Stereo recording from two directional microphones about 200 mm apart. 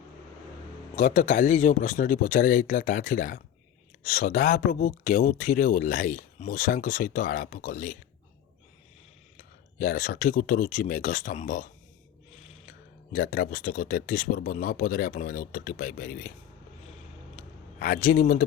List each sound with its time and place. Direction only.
0.9 s speech: 40° left (ahead or behind)
9.7 s speech: 45° left (ahead or behind)
13.1 s speech: 45° left (ahead or behind)
17.3 s a sound: 45° left (ahead or behind)